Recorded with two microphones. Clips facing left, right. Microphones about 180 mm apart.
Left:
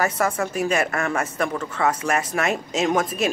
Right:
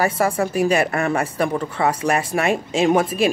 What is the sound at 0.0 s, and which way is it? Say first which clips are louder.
Speech: right 3 dB; 30° right (ahead or behind).